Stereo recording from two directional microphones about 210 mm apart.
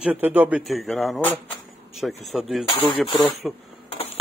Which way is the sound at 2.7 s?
25° left (ahead or behind).